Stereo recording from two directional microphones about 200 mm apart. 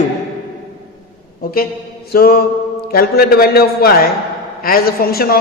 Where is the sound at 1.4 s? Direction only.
50° left (ahead or behind).